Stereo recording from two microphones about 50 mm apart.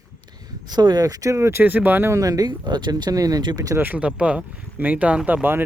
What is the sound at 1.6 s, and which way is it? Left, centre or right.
Speech, right.